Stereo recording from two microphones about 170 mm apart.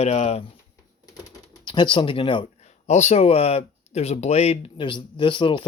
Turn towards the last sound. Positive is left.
turn(degrees=30)  # may be behind; listen again after turning